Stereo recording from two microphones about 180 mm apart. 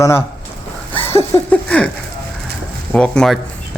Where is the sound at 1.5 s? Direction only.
5° left (ahead or behind).